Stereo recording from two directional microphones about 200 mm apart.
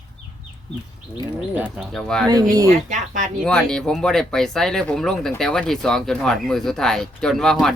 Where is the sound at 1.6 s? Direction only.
Centre (ahead or behind).